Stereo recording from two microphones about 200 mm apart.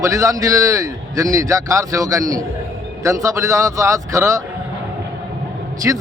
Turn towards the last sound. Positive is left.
turn(degrees=-10)  # may be behind; listen again after turning